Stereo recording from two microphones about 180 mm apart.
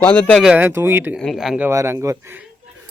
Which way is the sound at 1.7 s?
15° right (ahead or behind).